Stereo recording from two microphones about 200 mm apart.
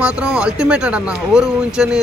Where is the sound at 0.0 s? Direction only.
5° right (ahead or behind).